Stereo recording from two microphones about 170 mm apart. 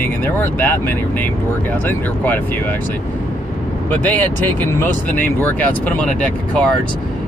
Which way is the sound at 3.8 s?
10° left (ahead or behind).